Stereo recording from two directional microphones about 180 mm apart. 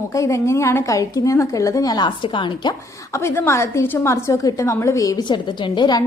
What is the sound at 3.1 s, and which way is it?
A woman's voice, 15° left (ahead or behind).